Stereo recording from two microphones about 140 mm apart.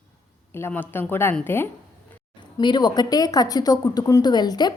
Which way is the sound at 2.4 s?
30° left (ahead or behind).